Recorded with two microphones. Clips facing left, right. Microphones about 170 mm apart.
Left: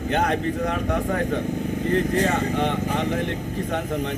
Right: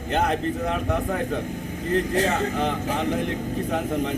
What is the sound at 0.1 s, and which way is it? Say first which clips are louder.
Speech: even; centre (ahead or behind).